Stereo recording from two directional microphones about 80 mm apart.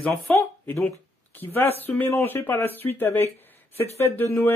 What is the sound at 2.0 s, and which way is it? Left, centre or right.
Speech, left.